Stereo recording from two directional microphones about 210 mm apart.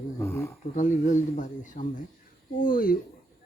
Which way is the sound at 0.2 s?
10° left (ahead or behind).